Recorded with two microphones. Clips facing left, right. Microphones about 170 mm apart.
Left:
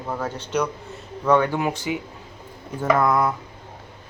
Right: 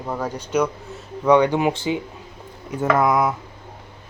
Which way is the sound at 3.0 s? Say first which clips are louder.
Right 3 dB; 10° right (ahead or behind).